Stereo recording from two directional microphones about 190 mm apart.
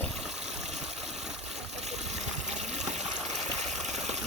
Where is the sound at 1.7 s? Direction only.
35° right (ahead or behind).